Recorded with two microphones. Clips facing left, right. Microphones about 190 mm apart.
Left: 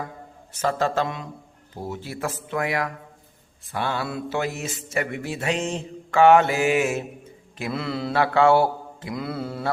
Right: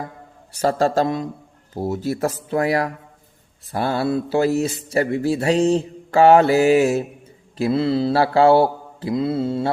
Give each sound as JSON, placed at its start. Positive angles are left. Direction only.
{"t": 0.6, "sound": "speech", "side_deg": -35}
{"t": 7.6, "sound": "mantra", "side_deg": -30}